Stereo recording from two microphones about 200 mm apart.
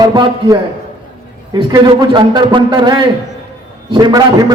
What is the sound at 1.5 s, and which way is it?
A man's voice, 20° right (ahead or behind).